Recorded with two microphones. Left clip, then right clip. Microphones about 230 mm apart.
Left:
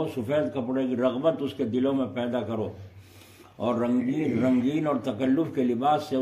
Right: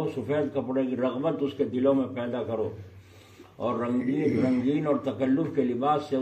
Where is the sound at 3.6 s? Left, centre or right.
Left.